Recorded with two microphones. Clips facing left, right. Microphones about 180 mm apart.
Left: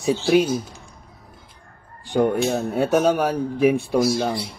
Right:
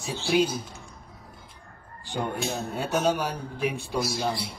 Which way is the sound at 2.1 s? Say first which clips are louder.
Left 10 dB; 60° left (ahead or behind).